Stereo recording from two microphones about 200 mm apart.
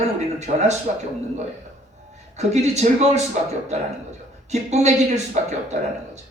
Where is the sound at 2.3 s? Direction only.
35° right (ahead or behind).